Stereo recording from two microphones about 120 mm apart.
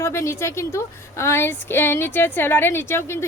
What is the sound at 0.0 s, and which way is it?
A woman's voice, 25° left (ahead or behind).